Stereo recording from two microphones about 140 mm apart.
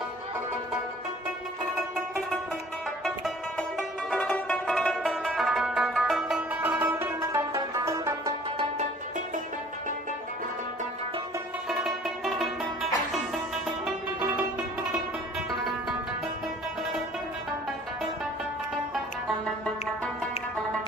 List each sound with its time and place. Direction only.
3.8 s music: 5° left (ahead or behind); by 8.3 s 20° right (ahead or behind)
11.7 s music: 5° right (ahead or behind)